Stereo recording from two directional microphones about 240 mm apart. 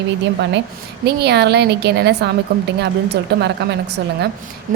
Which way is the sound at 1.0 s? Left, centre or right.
Right.